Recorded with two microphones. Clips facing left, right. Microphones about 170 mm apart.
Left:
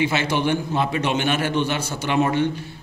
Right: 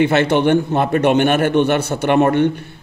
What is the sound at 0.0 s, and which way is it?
A man's voice, 60° right (ahead or behind).